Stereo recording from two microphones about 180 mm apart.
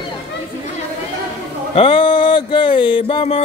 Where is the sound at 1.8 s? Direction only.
30° left (ahead or behind).